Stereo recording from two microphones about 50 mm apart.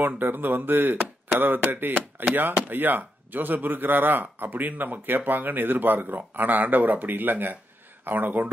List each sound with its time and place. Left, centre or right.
0.0 s speech: right